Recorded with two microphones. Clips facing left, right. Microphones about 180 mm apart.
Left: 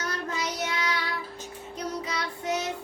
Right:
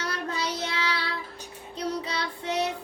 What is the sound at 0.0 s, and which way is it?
Child singing, 30° right (ahead or behind).